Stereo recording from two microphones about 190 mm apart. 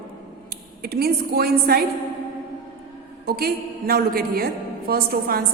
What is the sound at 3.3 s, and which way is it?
A woman's voice, 55° right (ahead or behind).